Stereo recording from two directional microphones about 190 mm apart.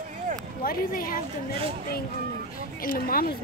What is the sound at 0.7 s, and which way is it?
Speech, 50° left (ahead or behind).